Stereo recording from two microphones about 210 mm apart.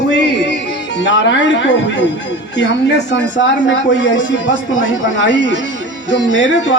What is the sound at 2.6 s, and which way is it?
A man's voice, 55° left (ahead or behind).